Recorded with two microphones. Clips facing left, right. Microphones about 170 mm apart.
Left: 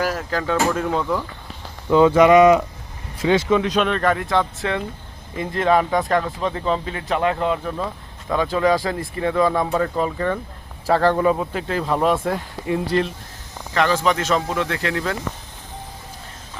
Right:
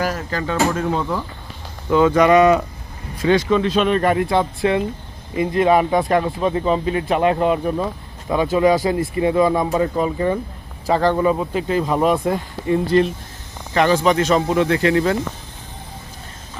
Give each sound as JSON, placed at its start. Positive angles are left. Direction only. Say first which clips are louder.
{"t": 0.0, "sound": "speech", "louder": "even", "side_deg": 5}
{"t": 1.9, "sound": "speech", "louder": "left 1 dB", "side_deg": 20}
{"t": 3.8, "sound": "speech", "louder": "right 3 dB", "side_deg": -5}
{"t": 14.0, "sound": "speech", "louder": "right 4 dB", "side_deg": -10}